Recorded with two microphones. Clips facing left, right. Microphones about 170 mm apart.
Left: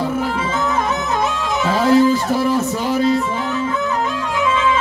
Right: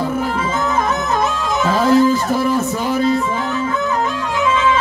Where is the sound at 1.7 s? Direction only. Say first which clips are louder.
Even; 45° right (ahead or behind).